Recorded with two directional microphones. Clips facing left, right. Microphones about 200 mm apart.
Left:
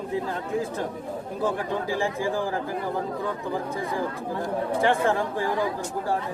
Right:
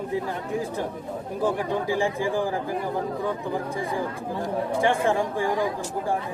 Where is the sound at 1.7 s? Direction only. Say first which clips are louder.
Right 2 dB; 15° right (ahead or behind).